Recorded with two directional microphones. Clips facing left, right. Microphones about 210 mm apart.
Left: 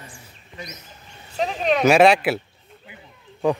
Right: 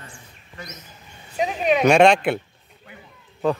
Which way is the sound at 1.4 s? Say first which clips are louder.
Right 1 dB; 5° right (ahead or behind).